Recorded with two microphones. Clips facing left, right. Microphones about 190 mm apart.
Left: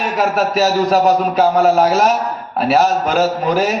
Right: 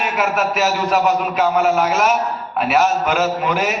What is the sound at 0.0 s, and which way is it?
A man's voice, 35° left (ahead or behind).